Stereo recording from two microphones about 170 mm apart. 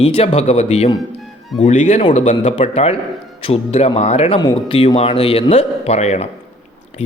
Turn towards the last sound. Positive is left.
turn(degrees=40)  # may be behind; listen again after turning